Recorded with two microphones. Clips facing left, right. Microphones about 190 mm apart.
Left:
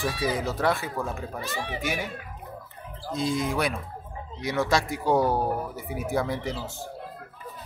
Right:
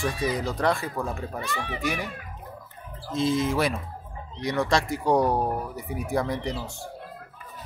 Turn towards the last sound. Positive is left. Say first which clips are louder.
# right 1 dB
turn(degrees=0)  # may be behind; listen again after turning